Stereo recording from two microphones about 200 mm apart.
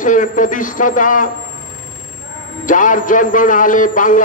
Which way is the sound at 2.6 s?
40° left (ahead or behind).